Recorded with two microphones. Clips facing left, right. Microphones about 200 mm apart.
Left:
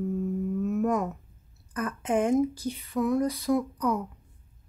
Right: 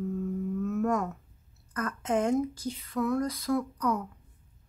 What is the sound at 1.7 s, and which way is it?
Speech, 15° left (ahead or behind).